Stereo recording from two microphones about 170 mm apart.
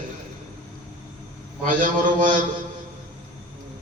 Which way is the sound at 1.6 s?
50° right (ahead or behind).